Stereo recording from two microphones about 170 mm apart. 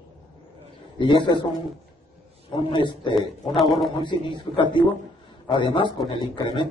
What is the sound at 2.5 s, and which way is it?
Speech, 30° left (ahead or behind).